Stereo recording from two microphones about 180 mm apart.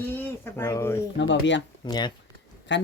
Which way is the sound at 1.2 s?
90° left.